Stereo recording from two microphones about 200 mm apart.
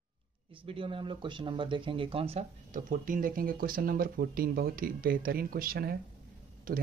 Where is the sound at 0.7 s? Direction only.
25° right (ahead or behind).